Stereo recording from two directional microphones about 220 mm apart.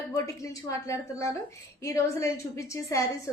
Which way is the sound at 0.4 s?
15° left (ahead or behind).